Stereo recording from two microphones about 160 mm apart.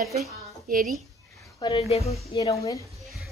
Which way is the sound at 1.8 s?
40° left (ahead or behind).